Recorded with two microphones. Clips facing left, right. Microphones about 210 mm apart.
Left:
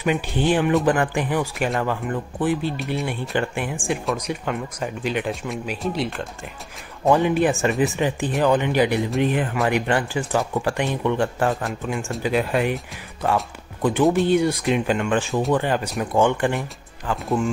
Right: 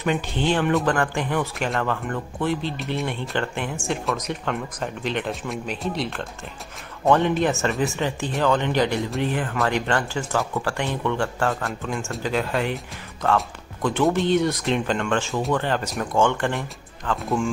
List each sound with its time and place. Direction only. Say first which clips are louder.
0.0 s speech: left 2 dB; 10° left (ahead or behind)
2.8 s speech: left 1 dB; centre (ahead or behind)
3.1 s speech: left 2 dB; 10° left (ahead or behind)
4.0 s speech: left 1 dB; centre (ahead or behind)